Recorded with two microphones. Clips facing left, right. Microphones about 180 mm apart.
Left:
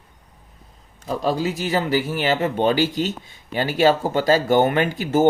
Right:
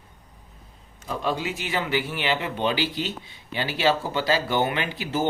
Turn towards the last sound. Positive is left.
turn(degrees=45)  # may be behind; listen again after turning